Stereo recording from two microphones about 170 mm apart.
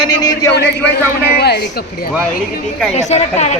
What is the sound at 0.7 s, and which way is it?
A man's voice, 75° left (ahead or behind).